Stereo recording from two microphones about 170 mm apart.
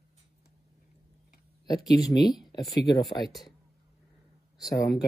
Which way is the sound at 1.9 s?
20° left (ahead or behind).